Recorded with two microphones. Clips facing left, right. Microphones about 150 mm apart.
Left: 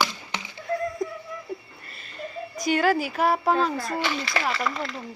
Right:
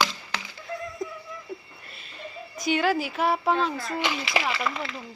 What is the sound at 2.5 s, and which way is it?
A woman's voice, centre (ahead or behind).